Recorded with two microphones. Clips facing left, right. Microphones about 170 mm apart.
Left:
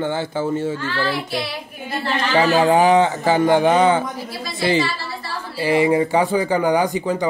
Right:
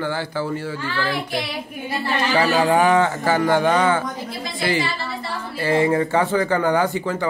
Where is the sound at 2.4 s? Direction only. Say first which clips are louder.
Left 3 dB; 20° left (ahead or behind).